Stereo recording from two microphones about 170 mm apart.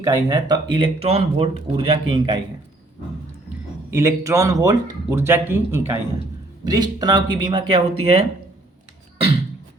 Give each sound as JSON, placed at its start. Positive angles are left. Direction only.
{"t": 0.0, "sound": "speech", "side_deg": -20}
{"t": 3.9, "sound": "speech", "side_deg": -15}